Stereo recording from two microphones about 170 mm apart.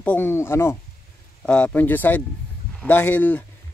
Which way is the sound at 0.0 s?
10° left (ahead or behind).